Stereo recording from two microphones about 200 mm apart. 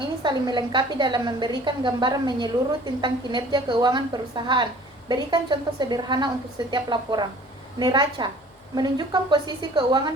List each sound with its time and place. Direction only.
0.2 s a woman's voice: 20° right (ahead or behind)